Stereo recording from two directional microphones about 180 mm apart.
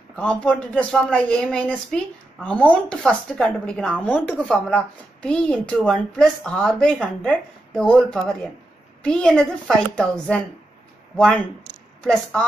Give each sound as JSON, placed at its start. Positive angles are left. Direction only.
{"t": 0.1, "sound": "speech", "side_deg": 5}